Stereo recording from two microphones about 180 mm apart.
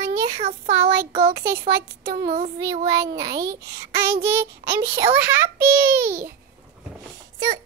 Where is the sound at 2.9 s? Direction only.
20° right (ahead or behind).